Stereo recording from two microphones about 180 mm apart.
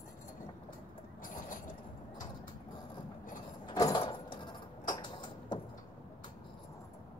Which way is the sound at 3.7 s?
20° left (ahead or behind).